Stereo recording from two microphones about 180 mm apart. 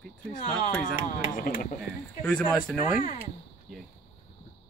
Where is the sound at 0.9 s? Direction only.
50° left (ahead or behind).